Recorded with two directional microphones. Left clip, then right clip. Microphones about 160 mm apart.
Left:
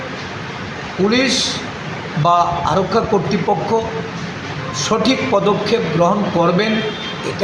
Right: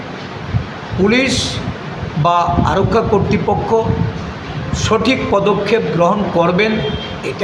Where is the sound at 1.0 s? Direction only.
15° right (ahead or behind).